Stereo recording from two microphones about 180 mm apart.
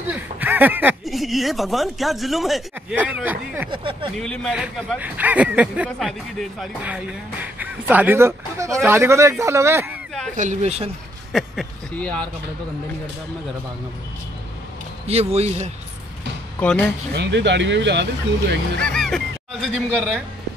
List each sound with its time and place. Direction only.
0.1 s a woman's voice: 10° right (ahead or behind)
3.7 s speech: 30° right (ahead or behind)
4.2 s speech: 5° left (ahead or behind)
4.6 s speech: 5° right (ahead or behind)
10.3 s speech: 45° right (ahead or behind)
11.3 s speech: 5° left (ahead or behind)
15.0 s speech: 35° right (ahead or behind)
16.5 s speech: 10° left (ahead or behind)
17.1 s speech: 70° right (ahead or behind)
18.8 s speech: 5° left (ahead or behind)